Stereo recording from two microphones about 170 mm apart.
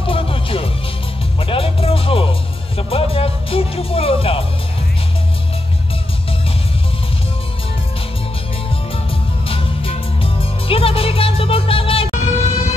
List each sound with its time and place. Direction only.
0.0 s music: 30° left (ahead or behind)
9.5 s music: 35° left (ahead or behind)